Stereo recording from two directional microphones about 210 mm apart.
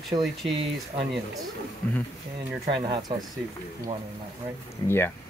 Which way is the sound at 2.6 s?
20° right (ahead or behind).